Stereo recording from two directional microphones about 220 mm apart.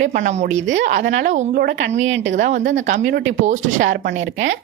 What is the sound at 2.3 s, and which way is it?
A woman's voice, 35° right (ahead or behind).